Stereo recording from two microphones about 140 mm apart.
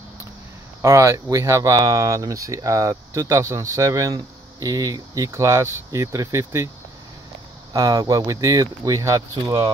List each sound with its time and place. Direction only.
0.8 s speech: 20° right (ahead or behind)
7.7 s speech: 25° right (ahead or behind)